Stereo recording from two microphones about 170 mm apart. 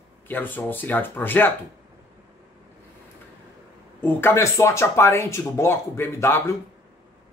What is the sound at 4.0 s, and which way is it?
Speech, 10° left (ahead or behind).